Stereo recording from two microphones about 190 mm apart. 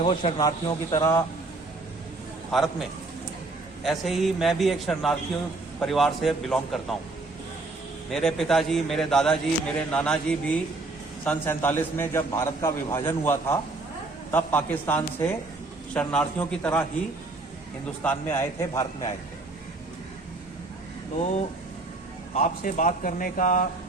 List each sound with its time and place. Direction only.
0.0 s a man's voice: 25° left (ahead or behind)
2.5 s a man's voice: centre (ahead or behind)
3.8 s a man's voice: centre (ahead or behind)
8.1 s a man's voice: centre (ahead or behind)
18.0 s a man's voice: 10° left (ahead or behind)
21.2 s a man's voice: 35° left (ahead or behind)